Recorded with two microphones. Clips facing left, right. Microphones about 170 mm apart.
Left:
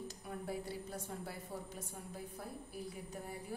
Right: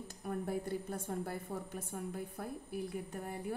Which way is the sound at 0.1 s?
50° right (ahead or behind).